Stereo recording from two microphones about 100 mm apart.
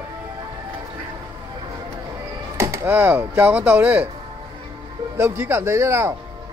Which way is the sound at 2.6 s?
30° right (ahead or behind).